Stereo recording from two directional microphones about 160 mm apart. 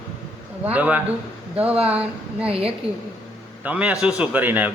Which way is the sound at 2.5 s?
35° right (ahead or behind).